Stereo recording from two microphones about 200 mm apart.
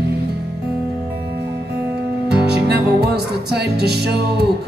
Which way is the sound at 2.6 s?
50° right (ahead or behind).